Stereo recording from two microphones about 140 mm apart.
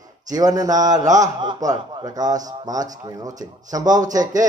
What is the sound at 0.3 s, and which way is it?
A man's voice, 25° right (ahead or behind).